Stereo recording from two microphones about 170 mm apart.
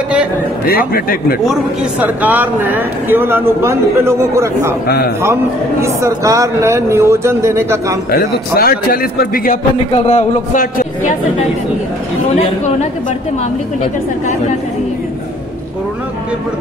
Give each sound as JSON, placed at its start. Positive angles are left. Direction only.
{"t": 0.7, "sound": "a man's voice", "side_deg": 60}
{"t": 1.5, "sound": "speech", "side_deg": -5}
{"t": 4.8, "sound": "a man's voice", "side_deg": 70}
{"t": 5.2, "sound": "speech", "side_deg": -15}
{"t": 8.1, "sound": "a man's voice", "side_deg": 65}
{"t": 9.8, "sound": "a man's voice", "side_deg": 35}
{"t": 10.5, "sound": "a man's voice", "side_deg": 55}